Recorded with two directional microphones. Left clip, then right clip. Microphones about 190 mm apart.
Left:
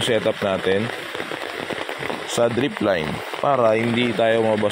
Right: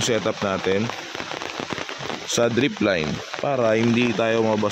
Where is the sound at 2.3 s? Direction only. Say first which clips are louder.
Even; 30° right (ahead or behind).